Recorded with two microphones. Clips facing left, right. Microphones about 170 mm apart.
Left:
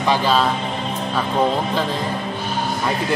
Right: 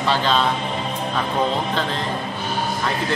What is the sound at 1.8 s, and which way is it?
Speech, 10° left (ahead or behind).